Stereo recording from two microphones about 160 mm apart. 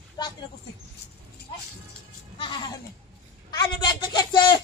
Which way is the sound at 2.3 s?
30° left (ahead or behind).